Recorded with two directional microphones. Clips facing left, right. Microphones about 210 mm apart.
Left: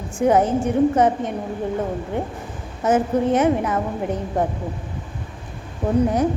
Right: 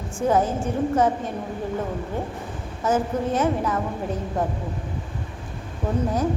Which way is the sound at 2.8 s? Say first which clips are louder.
Left 5 dB; 20° left (ahead or behind).